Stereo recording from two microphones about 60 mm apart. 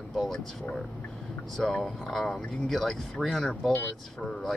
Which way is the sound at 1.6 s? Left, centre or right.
Centre.